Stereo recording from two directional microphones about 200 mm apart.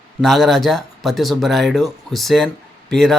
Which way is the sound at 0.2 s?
Centre (ahead or behind).